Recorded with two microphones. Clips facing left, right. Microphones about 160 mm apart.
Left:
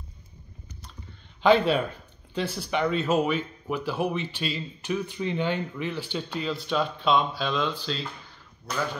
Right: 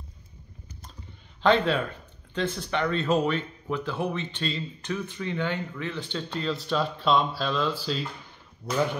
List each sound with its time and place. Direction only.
1.4 s speech: 10° left (ahead or behind)
6.1 s speech: 5° left (ahead or behind)
8.6 s speech: 30° right (ahead or behind)